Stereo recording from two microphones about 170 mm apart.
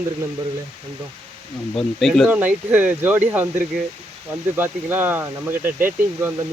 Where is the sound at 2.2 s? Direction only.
10° right (ahead or behind).